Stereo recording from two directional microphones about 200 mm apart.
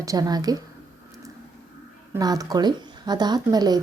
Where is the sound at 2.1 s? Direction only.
20° right (ahead or behind).